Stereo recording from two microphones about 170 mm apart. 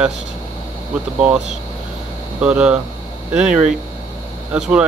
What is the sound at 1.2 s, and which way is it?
Speech, 5° right (ahead or behind).